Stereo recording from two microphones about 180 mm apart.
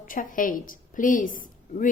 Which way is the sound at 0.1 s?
50° left (ahead or behind).